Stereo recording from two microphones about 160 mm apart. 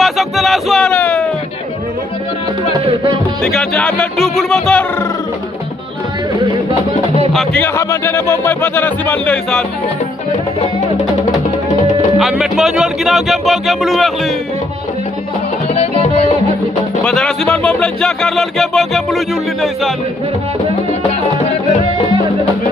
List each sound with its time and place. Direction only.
0.0 s music: centre (ahead or behind)
2.8 s music: 35° right (ahead or behind)
3.4 s speech: centre (ahead or behind)
7.3 s speech: 10° left (ahead or behind)
12.2 s speech: centre (ahead or behind)
15.7 s music: 40° left (ahead or behind)
17.0 s speech: 5° left (ahead or behind)